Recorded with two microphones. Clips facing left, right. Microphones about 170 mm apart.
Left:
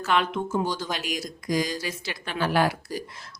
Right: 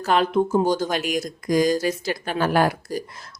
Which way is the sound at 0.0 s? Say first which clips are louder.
Right 6 dB; 35° right (ahead or behind).